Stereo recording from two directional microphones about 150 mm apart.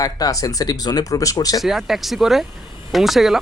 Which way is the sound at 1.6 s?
Centre (ahead or behind).